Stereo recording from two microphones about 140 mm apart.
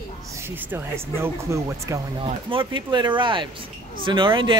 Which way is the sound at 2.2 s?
40° right (ahead or behind).